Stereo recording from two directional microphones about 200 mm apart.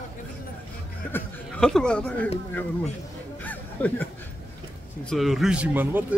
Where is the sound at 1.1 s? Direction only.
5° left (ahead or behind).